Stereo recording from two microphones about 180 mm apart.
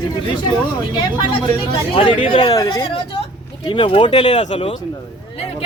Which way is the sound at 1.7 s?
30° left (ahead or behind).